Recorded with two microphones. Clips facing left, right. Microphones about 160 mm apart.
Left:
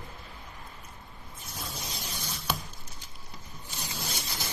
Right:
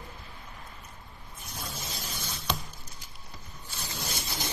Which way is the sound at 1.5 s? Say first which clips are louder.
Even; centre (ahead or behind).